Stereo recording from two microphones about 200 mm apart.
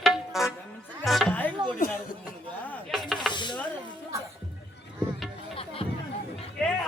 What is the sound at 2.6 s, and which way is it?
Chopping, 5° left (ahead or behind).